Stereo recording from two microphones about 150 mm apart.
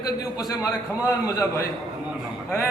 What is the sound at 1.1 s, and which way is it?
Speech, 20° left (ahead or behind).